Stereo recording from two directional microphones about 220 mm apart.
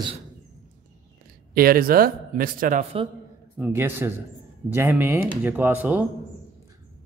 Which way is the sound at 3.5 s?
10° right (ahead or behind).